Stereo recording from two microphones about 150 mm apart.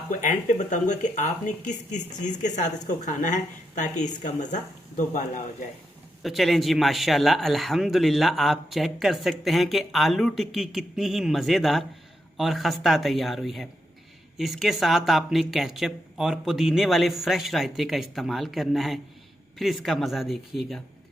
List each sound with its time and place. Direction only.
0.1 s speech: 55° left (ahead or behind)
6.2 s a man's voice: centre (ahead or behind)